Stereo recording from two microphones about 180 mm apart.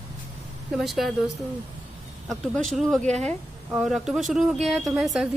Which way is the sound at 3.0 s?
35° right (ahead or behind).